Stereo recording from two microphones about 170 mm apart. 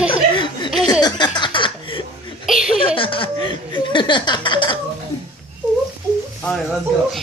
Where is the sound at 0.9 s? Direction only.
25° left (ahead or behind).